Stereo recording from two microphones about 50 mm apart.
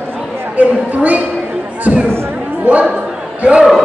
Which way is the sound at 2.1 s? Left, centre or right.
Right.